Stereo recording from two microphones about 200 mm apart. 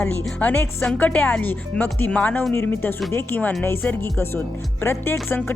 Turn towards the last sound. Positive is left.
turn(degrees=10)  # may be behind; listen again after turning